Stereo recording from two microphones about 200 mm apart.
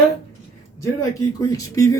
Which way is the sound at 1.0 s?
15° left (ahead or behind).